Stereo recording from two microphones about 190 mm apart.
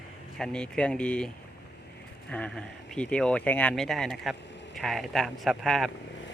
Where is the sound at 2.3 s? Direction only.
5° left (ahead or behind).